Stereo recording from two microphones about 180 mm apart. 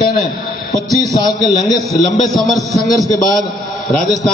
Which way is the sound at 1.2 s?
20° left (ahead or behind).